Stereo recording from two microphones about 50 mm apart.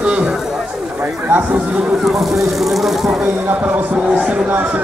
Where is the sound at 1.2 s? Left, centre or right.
Right.